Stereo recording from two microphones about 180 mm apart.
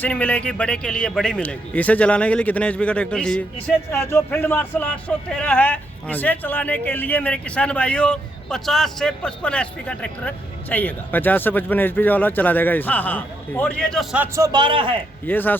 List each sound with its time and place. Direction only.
0.0 s speech: 10° left (ahead or behind)
14.3 s a man's voice: 20° right (ahead or behind)
15.3 s speech: 10° left (ahead or behind)